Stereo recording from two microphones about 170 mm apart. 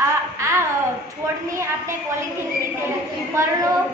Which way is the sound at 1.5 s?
15° right (ahead or behind).